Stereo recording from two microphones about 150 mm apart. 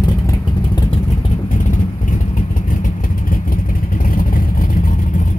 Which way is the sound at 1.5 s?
60° left (ahead or behind).